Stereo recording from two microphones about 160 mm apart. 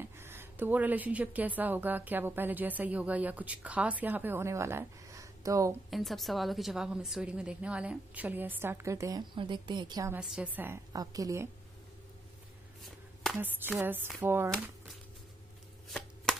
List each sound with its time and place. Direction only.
0.0 s a woman's voice: 15° right (ahead or behind)
5.9 s a woman's voice: centre (ahead or behind); by 10.1 s 25° right (ahead or behind)
10.1 s a woman's voice: 10° right (ahead or behind)
10.9 s a woman's voice: 20° right (ahead or behind)
12.8 s a sound: centre (ahead or behind)
13.4 s a woman's voice: 10° right (ahead or behind)
16.3 s a sound: 5° left (ahead or behind)